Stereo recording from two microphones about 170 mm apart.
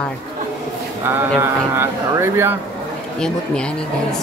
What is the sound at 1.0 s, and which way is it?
Speech, 15° right (ahead or behind).